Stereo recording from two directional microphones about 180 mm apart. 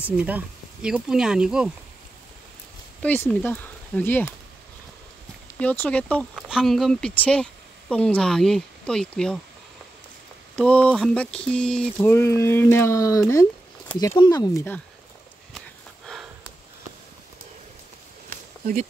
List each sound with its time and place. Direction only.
0.8 s speech: 5° right (ahead or behind)
3.0 s speech: 10° left (ahead or behind)
5.6 s speech: 10° left (ahead or behind)
10.5 s speech: 5° left (ahead or behind)
12.0 s speech: 15° left (ahead or behind)